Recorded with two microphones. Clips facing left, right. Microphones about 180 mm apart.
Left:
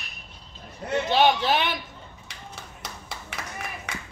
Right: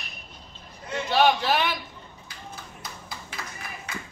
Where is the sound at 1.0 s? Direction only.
20° left (ahead or behind).